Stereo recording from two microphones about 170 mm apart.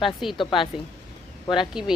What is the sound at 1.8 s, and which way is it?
Speech, 5° right (ahead or behind).